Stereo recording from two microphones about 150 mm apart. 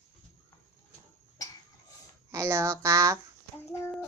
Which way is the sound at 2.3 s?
20° right (ahead or behind).